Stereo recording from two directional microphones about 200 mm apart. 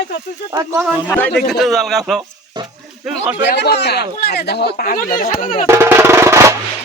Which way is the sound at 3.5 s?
55° left (ahead or behind).